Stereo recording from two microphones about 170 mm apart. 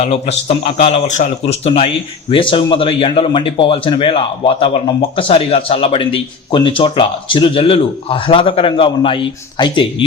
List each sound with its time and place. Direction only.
0.0 s a man's voice: 40° left (ahead or behind)